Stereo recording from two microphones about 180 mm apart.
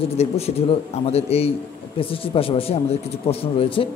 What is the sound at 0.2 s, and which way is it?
A man's voice, 35° left (ahead or behind).